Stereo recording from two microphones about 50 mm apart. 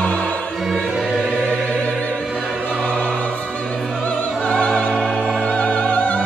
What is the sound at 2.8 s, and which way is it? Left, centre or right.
Opera, left.